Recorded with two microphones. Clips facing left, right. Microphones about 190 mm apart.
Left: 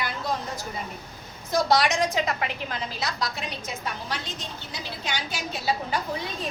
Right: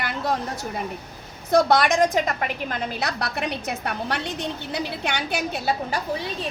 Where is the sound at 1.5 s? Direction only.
60° right (ahead or behind).